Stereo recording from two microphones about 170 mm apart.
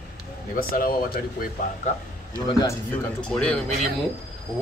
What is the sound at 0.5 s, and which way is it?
Speech, 55° left (ahead or behind).